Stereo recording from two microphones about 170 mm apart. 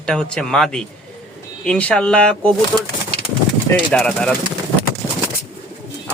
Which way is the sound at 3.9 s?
5° left (ahead or behind).